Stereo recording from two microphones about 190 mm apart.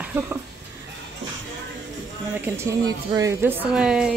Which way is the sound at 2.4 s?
15° right (ahead or behind).